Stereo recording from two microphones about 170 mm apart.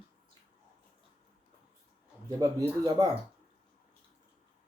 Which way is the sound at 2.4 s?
20° right (ahead or behind).